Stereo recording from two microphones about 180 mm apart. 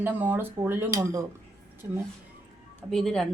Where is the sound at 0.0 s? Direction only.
10° right (ahead or behind).